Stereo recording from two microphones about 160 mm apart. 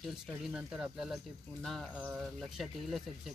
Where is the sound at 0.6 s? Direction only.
5° right (ahead or behind).